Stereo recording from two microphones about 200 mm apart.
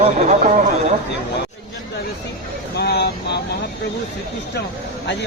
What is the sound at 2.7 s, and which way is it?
Vehicle, 55° left (ahead or behind).